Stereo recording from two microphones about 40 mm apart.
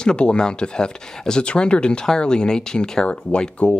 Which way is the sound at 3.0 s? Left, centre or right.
Left.